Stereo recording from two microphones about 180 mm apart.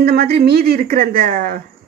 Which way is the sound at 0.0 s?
60° right (ahead or behind).